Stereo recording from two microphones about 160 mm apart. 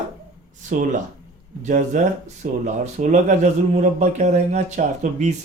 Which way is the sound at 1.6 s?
50° right (ahead or behind).